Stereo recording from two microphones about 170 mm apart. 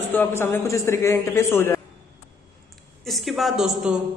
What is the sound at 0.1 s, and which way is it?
A man's voice, 15° left (ahead or behind).